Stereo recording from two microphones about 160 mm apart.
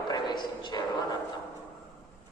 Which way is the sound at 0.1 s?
25° left (ahead or behind).